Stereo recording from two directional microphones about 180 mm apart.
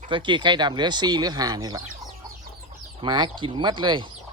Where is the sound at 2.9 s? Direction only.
25° right (ahead or behind).